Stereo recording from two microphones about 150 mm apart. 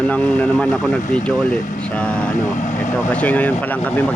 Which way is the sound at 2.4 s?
55° left (ahead or behind).